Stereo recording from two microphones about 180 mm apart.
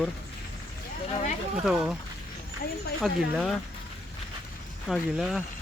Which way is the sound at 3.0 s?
5° left (ahead or behind).